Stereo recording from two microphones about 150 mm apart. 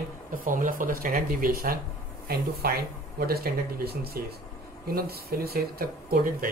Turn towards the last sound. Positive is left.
turn(degrees=-70)  # may be behind; listen again after turning